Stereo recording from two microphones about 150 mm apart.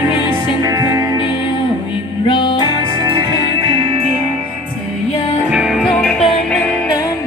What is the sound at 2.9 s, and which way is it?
Music, 25° right (ahead or behind).